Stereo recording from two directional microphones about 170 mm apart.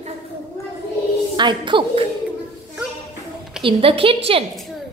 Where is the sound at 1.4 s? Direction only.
25° right (ahead or behind).